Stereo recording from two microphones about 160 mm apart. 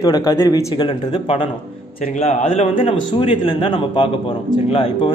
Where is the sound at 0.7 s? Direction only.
35° left (ahead or behind).